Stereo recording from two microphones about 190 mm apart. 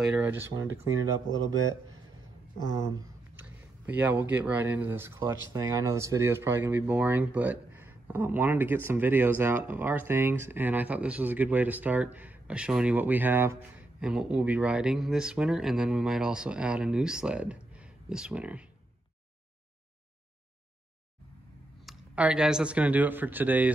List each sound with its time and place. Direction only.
0.0 s speech: 10° right (ahead or behind)
2.7 s speech: 15° right (ahead or behind)
21.8 s speech: 5° right (ahead or behind)